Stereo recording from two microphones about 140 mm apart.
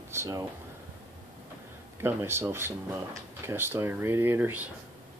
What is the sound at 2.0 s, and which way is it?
Speech, 15° right (ahead or behind).